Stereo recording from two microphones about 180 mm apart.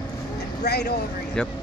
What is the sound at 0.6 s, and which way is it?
Speech, 65° left (ahead or behind).